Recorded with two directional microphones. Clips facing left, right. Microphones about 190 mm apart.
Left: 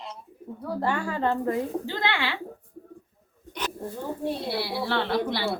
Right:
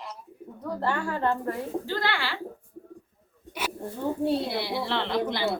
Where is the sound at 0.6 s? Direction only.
10° left (ahead or behind).